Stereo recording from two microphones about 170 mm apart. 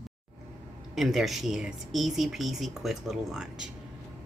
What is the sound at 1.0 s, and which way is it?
Speech, centre (ahead or behind).